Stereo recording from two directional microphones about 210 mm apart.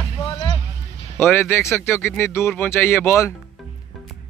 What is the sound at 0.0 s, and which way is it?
Basketball bounce, 25° left (ahead or behind).